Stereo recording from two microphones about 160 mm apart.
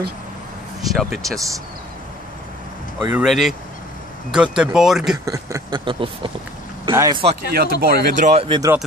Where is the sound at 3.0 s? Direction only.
10° right (ahead or behind).